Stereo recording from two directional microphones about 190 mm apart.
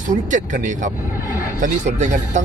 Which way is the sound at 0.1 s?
40° right (ahead or behind).